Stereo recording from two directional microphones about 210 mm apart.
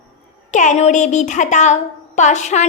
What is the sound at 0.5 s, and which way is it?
Child singing, 35° left (ahead or behind).